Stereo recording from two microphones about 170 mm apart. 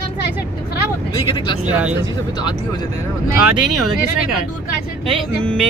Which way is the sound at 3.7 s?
Centre (ahead or behind).